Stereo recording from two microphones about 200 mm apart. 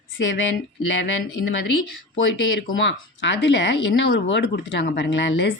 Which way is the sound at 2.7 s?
65° left (ahead or behind).